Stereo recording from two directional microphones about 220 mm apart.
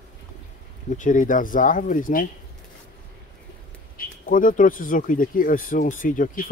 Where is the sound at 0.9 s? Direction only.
35° left (ahead or behind).